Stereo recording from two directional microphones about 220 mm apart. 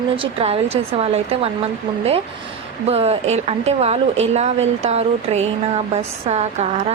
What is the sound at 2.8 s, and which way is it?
Speech, 30° right (ahead or behind).